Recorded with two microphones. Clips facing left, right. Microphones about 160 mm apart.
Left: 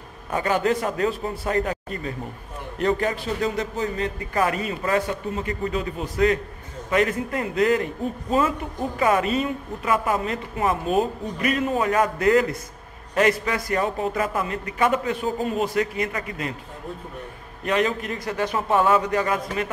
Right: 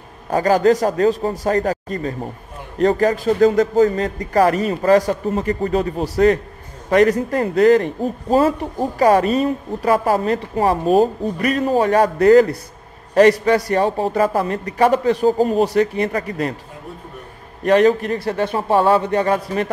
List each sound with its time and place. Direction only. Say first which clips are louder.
0.3 s a man's voice: right 8 dB; 35° right (ahead or behind)
17.6 s a man's voice: right 9 dB; 40° right (ahead or behind)